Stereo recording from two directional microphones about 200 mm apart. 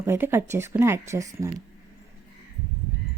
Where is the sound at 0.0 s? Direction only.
10° right (ahead or behind).